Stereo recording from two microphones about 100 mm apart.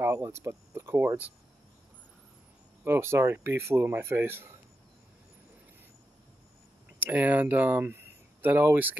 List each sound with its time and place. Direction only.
0.0 s speech: 25° right (ahead or behind)
2.8 s speech: 25° right (ahead or behind)
7.0 s speech: 15° right (ahead or behind)